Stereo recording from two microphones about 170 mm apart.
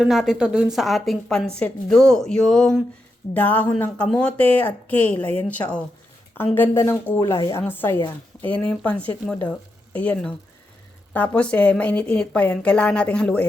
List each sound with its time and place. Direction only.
0.0 s a woman's voice: 5° right (ahead or behind); by 6.9 s 15° left (ahead or behind)
7.2 s speech: 25° left (ahead or behind); by 13.4 s 5° left (ahead or behind)